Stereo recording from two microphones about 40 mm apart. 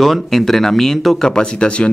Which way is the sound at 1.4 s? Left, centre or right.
Left.